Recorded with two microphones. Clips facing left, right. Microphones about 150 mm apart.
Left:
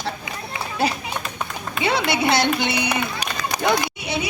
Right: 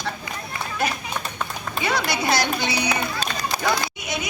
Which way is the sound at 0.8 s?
30° left (ahead or behind).